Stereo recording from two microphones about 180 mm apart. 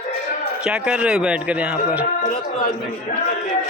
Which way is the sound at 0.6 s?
5° right (ahead or behind).